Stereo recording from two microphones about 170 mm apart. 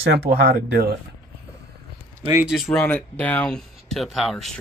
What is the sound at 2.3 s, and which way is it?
Speech, 10° right (ahead or behind).